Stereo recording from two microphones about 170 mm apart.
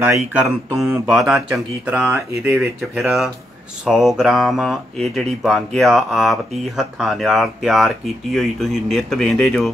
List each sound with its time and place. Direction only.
0.0 s speech: 10° right (ahead or behind)
1.1 s speech: centre (ahead or behind)